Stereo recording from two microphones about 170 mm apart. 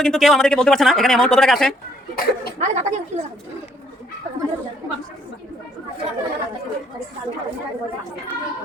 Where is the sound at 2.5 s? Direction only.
45° right (ahead or behind).